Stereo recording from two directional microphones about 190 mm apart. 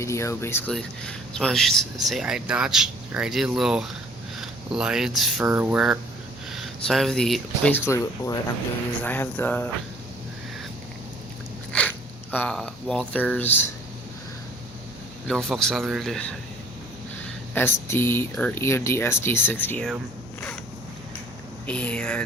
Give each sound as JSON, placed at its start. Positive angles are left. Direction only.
{"t": 0.0, "sound": "speech", "side_deg": 15}
{"t": 11.7, "sound": "speech", "side_deg": 5}
{"t": 15.3, "sound": "speech", "side_deg": 0}
{"t": 17.5, "sound": "speech", "side_deg": 10}
{"t": 21.7, "sound": "speech", "side_deg": 5}